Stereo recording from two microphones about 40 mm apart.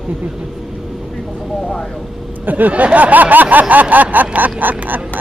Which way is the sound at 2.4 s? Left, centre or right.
Right.